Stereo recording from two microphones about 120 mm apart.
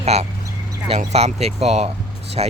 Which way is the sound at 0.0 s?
65° right (ahead or behind).